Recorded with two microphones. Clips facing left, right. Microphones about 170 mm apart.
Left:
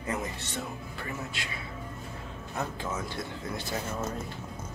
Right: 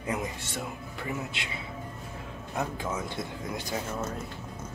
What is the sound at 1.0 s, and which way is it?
Speech, 20° right (ahead or behind).